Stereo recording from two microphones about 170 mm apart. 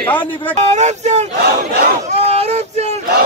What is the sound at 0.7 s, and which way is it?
Speech, 40° right (ahead or behind).